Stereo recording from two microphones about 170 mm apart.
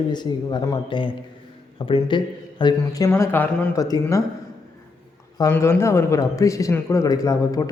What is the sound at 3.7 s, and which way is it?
Speech, 20° left (ahead or behind).